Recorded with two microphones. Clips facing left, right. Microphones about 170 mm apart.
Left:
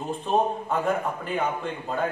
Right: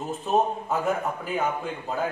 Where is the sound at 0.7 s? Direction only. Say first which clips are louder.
Left 1 dB; 5° right (ahead or behind).